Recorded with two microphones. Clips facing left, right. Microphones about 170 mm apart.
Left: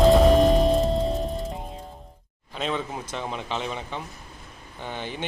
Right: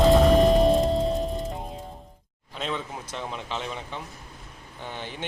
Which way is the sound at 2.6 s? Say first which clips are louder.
Left 3 dB; 5° left (ahead or behind).